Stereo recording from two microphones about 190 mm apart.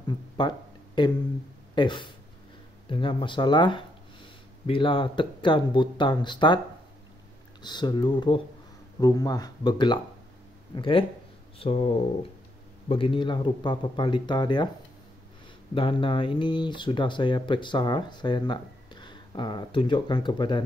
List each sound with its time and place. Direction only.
0.1 s a sound: 25° left (ahead or behind)
1.8 s speech: 25° left (ahead or behind)
7.6 s speech: 25° left (ahead or behind)
15.7 s speech: 25° left (ahead or behind)